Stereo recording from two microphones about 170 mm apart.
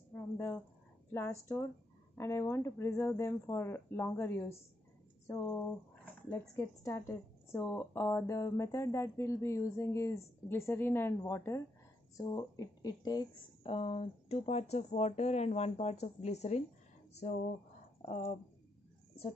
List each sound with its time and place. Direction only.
0.1 s dog: 15° left (ahead or behind)
1.1 s a woman's voice: 15° left (ahead or behind); by 18.4 s 35° left (ahead or behind)